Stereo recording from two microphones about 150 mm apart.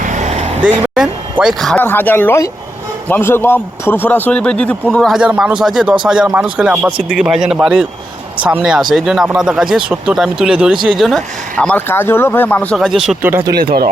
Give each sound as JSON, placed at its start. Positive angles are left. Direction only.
{"t": 0.0, "sound": "vehicle", "side_deg": -55}
{"t": 0.9, "sound": "a man's voice", "side_deg": -5}
{"t": 1.8, "sound": "a man's voice", "side_deg": 15}
{"t": 13.2, "sound": "speech", "side_deg": -20}
{"t": 13.6, "sound": "speech", "side_deg": -85}